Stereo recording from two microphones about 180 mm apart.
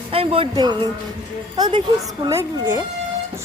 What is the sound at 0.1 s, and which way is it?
A woman's voice, 30° right (ahead or behind).